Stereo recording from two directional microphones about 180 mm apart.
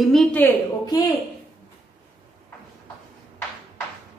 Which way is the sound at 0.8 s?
20° left (ahead or behind).